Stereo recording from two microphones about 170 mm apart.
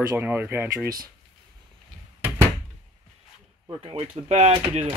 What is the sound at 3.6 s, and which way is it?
Speech, 30° right (ahead or behind).